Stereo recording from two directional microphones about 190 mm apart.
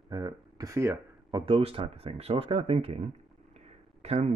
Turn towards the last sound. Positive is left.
turn(degrees=-35)  # may be behind; listen again after turning